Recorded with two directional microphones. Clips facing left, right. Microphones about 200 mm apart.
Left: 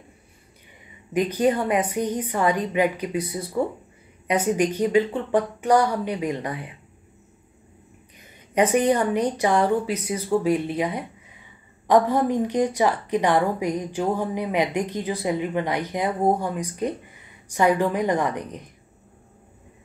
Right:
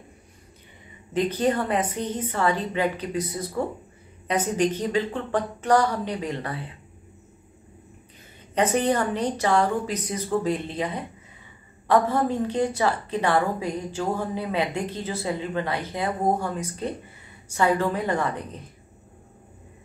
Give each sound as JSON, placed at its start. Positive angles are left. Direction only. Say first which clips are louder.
{"t": 1.1, "sound": "a woman's voice", "louder": "left 2 dB", "side_deg": 10}
{"t": 8.5, "sound": "a woman's voice", "louder": "left 3 dB", "side_deg": 10}